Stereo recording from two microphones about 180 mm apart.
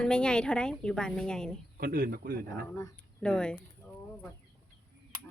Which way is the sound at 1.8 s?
55° right (ahead or behind).